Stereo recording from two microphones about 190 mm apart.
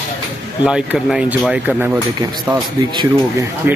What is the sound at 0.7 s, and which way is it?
Speech, 5° right (ahead or behind).